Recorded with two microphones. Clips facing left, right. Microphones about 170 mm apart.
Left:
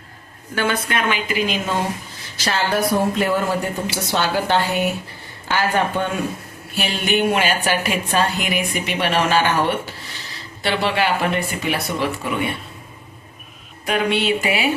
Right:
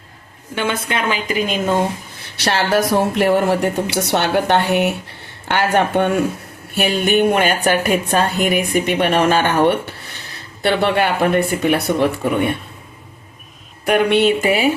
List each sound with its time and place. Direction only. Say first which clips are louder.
0.7 s a woman's voice: right 2 dB; 25° right (ahead or behind)
1.3 s a woman's voice: right 2 dB; 40° right (ahead or behind)
2.3 s a woman's voice: right 4 dB; 70° right (ahead or behind)
6.7 s a woman's voice: right 5 dB; 50° right (ahead or behind)
13.8 s a woman's voice: right 6 dB; 60° right (ahead or behind)